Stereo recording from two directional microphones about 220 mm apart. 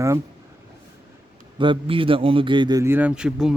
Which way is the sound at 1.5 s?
20° right (ahead or behind).